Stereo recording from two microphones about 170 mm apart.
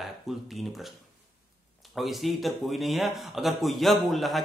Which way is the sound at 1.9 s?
Centre (ahead or behind).